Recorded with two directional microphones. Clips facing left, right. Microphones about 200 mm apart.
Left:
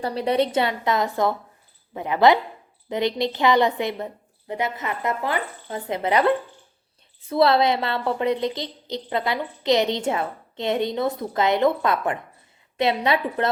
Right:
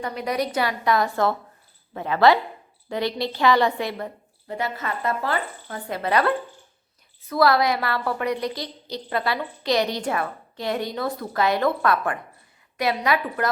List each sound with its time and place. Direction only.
0.0 s a woman's voice: 30° left (ahead or behind)